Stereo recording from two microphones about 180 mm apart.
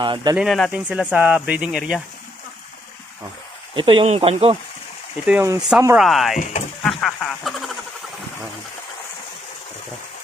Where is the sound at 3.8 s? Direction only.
30° right (ahead or behind).